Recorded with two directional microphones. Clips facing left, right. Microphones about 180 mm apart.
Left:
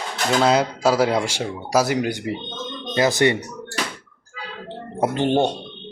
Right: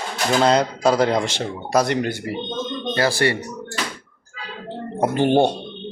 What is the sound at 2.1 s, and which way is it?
Speech, 20° left (ahead or behind).